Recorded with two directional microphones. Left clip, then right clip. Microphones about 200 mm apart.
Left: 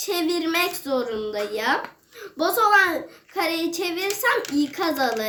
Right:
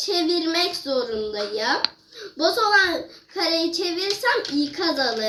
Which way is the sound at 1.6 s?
25° left (ahead or behind).